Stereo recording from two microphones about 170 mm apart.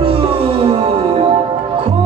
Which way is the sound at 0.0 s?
30° right (ahead or behind).